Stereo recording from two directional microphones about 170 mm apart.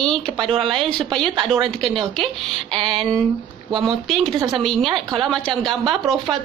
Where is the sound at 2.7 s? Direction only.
30° right (ahead or behind).